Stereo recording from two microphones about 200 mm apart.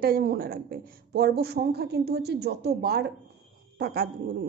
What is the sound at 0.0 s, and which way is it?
A woman's voice, 50° right (ahead or behind).